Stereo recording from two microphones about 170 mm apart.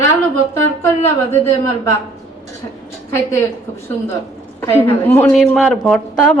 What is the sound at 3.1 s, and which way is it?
A woman's voice, 15° left (ahead or behind).